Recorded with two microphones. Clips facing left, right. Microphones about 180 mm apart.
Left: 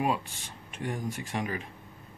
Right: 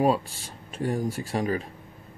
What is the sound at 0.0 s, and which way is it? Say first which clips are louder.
Speech: right 7 dB; 35° right (ahead or behind).